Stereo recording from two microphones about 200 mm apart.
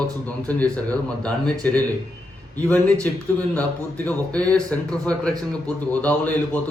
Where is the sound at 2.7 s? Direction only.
5° left (ahead or behind).